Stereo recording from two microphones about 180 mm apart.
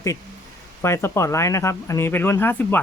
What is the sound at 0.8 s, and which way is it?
Speech, 15° left (ahead or behind).